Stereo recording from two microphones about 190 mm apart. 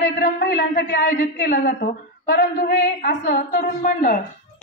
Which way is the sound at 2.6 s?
65° left (ahead or behind).